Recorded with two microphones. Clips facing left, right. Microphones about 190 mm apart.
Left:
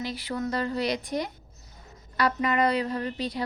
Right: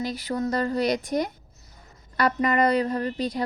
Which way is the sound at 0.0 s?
45° right (ahead or behind).